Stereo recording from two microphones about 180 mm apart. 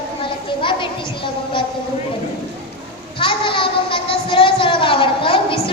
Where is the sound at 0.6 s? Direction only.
25° left (ahead or behind).